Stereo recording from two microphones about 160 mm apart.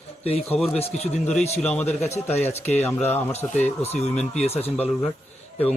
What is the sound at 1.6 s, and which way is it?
Speech, 10° left (ahead or behind).